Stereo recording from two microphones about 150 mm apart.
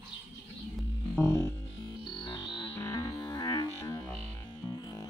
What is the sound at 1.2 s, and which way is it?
Music, 20° left (ahead or behind).